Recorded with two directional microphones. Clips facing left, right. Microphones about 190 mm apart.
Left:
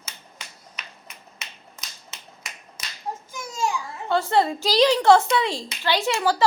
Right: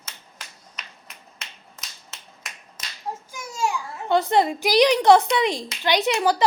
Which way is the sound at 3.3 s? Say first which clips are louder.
Even; 10° right (ahead or behind).